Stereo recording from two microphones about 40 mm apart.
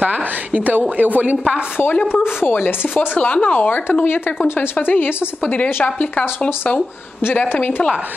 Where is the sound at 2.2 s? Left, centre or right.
Left.